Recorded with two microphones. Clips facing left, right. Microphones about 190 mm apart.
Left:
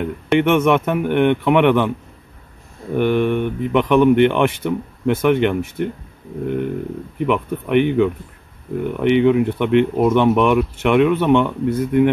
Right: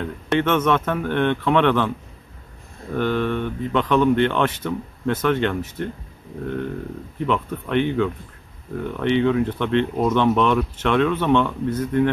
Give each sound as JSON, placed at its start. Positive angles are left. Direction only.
{"t": 0.0, "sound": "speech", "side_deg": 15}
{"t": 2.9, "sound": "speech", "side_deg": 15}